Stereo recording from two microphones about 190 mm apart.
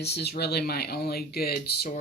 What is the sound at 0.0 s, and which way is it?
Speech, 60° left (ahead or behind).